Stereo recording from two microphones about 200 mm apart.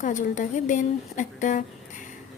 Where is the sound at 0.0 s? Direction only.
40° left (ahead or behind).